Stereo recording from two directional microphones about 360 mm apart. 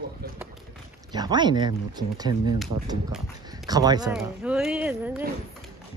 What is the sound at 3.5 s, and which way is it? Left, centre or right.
Speech, centre.